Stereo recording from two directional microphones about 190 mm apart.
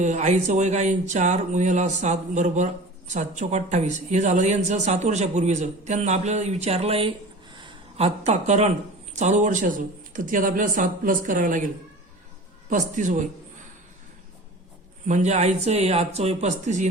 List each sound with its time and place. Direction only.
0.0 s speech: 40° right (ahead or behind)
7.5 s a sound: 30° right (ahead or behind)
9.1 s speech: 40° right (ahead or behind)
12.7 s speech: 40° right (ahead or behind)
15.0 s speech: 40° right (ahead or behind)